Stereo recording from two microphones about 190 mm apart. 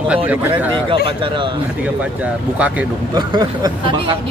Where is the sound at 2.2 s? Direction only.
5° right (ahead or behind).